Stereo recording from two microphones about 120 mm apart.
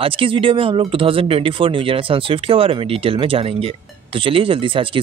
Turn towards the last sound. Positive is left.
turn(degrees=-45)  # may be behind; listen again after turning